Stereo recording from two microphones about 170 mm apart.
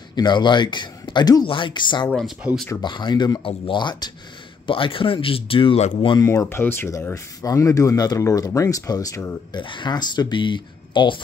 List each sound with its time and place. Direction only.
0.1 s speech: 25° left (ahead or behind)
2.0 s speech: 5° left (ahead or behind)
2.7 s speech: 25° left (ahead or behind)
6.2 s speech: 15° left (ahead or behind)
9.5 s speech: 30° left (ahead or behind)